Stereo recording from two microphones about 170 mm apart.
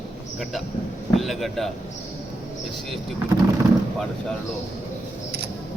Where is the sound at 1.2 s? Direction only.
Centre (ahead or behind).